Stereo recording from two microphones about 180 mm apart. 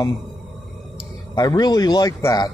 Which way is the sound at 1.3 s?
20° left (ahead or behind).